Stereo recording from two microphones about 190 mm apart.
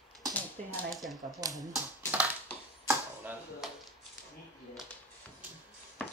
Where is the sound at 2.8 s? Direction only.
10° right (ahead or behind).